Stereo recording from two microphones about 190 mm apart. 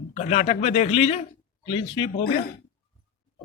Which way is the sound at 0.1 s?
35° left (ahead or behind).